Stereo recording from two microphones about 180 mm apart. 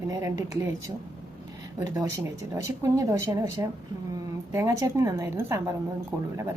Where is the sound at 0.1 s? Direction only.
20° right (ahead or behind).